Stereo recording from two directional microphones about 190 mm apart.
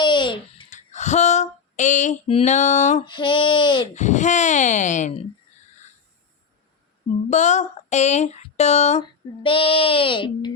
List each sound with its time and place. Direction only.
0.0 s babbling: 25° left (ahead or behind)
0.7 s female singing: 40° left (ahead or behind)
3.1 s speech: 25° left (ahead or behind)
3.9 s speech: 40° left (ahead or behind)
7.3 s speech: 40° left (ahead or behind)